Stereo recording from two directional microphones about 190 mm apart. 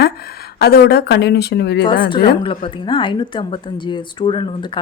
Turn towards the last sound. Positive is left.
turn(degrees=25)  # may be behind; listen again after turning